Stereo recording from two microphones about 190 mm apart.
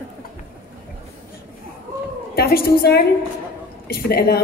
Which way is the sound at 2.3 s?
55° left (ahead or behind).